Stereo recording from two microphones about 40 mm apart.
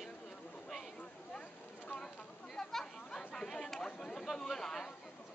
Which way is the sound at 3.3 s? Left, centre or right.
Centre.